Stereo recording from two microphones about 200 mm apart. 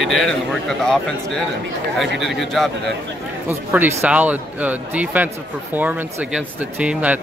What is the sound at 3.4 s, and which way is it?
Speech, 10° right (ahead or behind).